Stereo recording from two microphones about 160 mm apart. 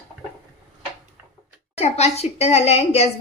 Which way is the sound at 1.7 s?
40° left (ahead or behind).